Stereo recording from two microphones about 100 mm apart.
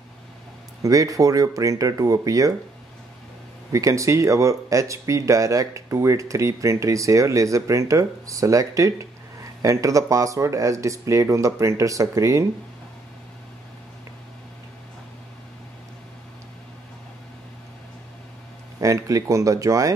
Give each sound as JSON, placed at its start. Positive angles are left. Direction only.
{"t": 0.8, "sound": "speech", "side_deg": -35}
{"t": 3.7, "sound": "speech", "side_deg": -30}
{"t": 18.8, "sound": "speech", "side_deg": -30}